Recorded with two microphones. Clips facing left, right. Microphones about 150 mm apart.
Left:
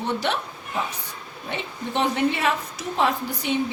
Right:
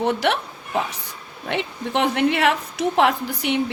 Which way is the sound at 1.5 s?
70° right (ahead or behind).